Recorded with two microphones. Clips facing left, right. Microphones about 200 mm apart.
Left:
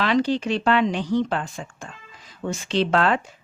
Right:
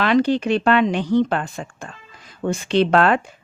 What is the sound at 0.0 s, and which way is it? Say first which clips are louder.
Speech: right 4 dB; 60° right (ahead or behind).